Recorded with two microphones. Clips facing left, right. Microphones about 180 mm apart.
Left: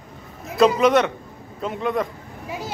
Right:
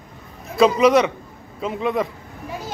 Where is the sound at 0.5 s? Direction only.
Centre (ahead or behind).